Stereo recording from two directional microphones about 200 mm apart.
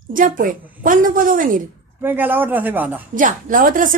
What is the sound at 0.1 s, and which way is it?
A woman's voice, 40° right (ahead or behind).